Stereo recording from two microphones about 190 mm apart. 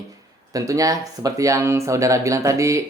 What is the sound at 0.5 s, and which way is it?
Speech, 15° right (ahead or behind).